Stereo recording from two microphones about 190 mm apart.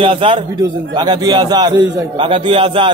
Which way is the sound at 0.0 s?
30° right (ahead or behind).